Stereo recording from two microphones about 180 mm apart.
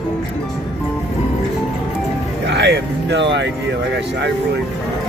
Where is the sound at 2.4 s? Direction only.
70° right (ahead or behind).